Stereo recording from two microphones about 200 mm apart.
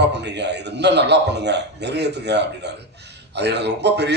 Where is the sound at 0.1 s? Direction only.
60° right (ahead or behind).